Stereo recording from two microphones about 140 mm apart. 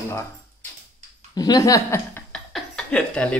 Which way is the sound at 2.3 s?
5° left (ahead or behind).